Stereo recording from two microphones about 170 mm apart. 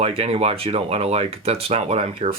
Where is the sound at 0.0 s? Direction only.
35° right (ahead or behind).